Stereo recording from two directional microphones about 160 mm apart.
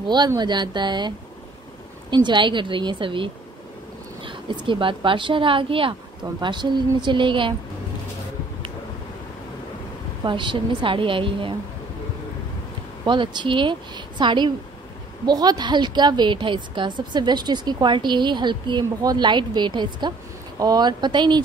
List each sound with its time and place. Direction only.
0.0 s a woman's voice: 25° right (ahead or behind)
10.2 s speech: 30° right (ahead or behind)
13.0 s a woman's voice: 30° right (ahead or behind)